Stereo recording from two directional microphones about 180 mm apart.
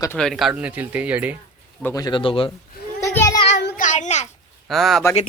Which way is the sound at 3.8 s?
40° left (ahead or behind).